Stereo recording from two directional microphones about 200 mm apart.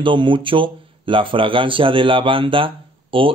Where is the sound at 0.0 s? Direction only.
25° right (ahead or behind).